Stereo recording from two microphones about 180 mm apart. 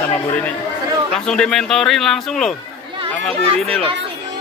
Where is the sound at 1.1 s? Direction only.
5° left (ahead or behind).